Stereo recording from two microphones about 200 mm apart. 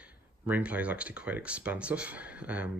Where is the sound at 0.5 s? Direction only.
5° right (ahead or behind).